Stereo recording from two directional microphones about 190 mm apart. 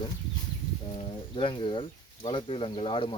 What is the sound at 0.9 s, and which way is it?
Speech, 25° left (ahead or behind).